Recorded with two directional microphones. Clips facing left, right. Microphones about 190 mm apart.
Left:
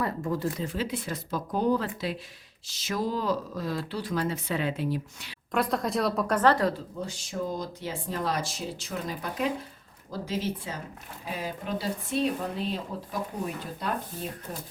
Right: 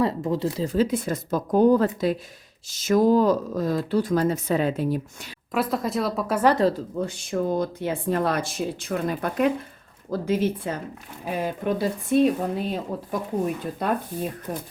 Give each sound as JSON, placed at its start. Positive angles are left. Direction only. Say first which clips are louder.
{"t": 0.0, "sound": "speech", "louder": "right 6 dB", "side_deg": -25}
{"t": 0.5, "sound": "speech", "louder": "right 9 dB", "side_deg": -35}
{"t": 5.5, "sound": "speech", "louder": "right 2 dB", "side_deg": -5}
{"t": 6.7, "sound": "speech", "louder": "right 7 dB", "side_deg": -55}